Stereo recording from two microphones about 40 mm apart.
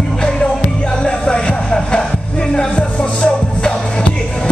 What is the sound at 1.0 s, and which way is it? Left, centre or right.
Music, centre.